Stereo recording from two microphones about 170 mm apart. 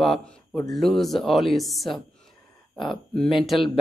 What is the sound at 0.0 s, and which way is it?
Speech, 5° left (ahead or behind).